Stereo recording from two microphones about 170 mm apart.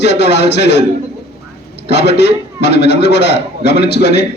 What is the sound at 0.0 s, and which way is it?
Speech, 80° left.